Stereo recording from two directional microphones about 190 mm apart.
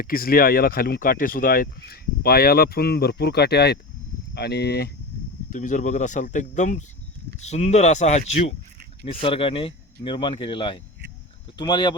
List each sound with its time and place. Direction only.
0.0 s speech: 50° left (ahead or behind)
5.5 s speech: 40° left (ahead or behind); by 11.9 s 25° left (ahead or behind)